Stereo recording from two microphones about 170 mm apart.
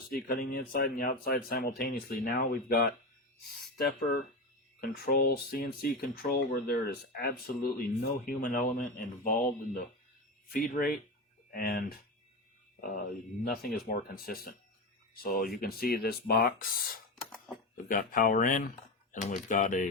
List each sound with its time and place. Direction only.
0.1 s speech: 60° left (ahead or behind)
8.2 s speech: 50° left (ahead or behind)